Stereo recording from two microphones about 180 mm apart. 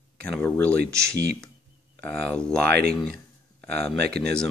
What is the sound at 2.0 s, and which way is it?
Speech, 5° left (ahead or behind).